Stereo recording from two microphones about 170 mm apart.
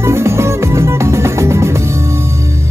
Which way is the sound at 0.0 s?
15° right (ahead or behind).